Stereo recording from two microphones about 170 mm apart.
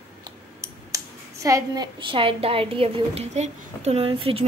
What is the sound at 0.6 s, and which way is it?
A woman's voice, 20° right (ahead or behind).